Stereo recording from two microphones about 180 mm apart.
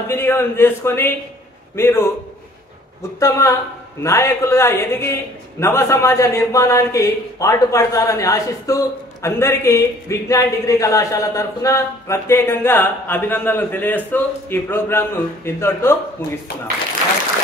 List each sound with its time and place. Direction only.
0.1 s a man's voice: 15° left (ahead or behind)
3.2 s a man's voice: 15° left (ahead or behind)